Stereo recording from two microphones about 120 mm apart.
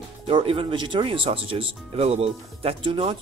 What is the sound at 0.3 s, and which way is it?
Speech, 45° right (ahead or behind).